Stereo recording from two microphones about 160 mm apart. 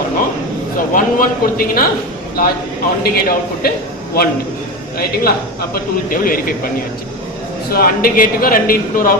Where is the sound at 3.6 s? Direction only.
70° left (ahead or behind).